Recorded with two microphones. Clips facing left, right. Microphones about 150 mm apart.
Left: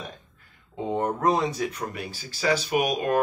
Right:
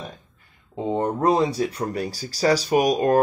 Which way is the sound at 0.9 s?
30° right (ahead or behind).